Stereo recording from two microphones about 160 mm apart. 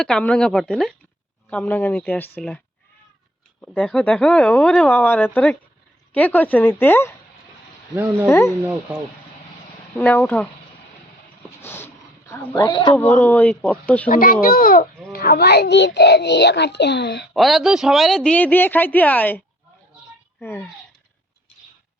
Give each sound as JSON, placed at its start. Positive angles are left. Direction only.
{"t": 0.0, "sound": "speech", "side_deg": 5}
{"t": 3.6, "sound": "speech", "side_deg": 5}
{"t": 7.9, "sound": "speech", "side_deg": -10}
{"t": 8.3, "sound": "speech", "side_deg": 15}
{"t": 10.0, "sound": "speech", "side_deg": 10}
{"t": 11.6, "sound": "a sound", "side_deg": 15}
{"t": 12.5, "sound": "speech", "side_deg": 25}
{"t": 12.9, "sound": "speech", "side_deg": 10}
{"t": 14.1, "sound": "a child's voice", "side_deg": 60}
{"t": 17.3, "sound": "speech", "side_deg": 0}
{"t": 20.4, "sound": "speech", "side_deg": 10}